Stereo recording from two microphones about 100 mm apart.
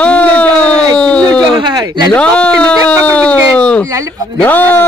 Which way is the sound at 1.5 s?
50° right (ahead or behind).